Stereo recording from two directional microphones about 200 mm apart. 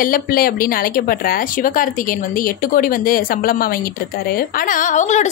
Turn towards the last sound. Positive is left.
turn(degrees=35)  # may be behind; listen again after turning